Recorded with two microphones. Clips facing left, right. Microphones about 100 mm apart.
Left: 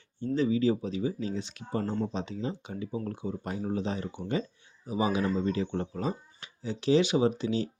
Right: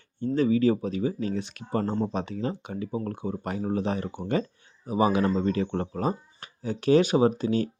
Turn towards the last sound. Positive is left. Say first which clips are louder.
# right 4 dB
turn(degrees=-50)  # may be behind; listen again after turning